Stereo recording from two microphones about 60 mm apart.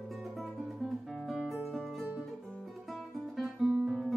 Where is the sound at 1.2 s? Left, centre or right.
Centre.